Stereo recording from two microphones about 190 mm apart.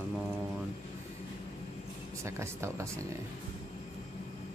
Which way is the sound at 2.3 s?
15° right (ahead or behind).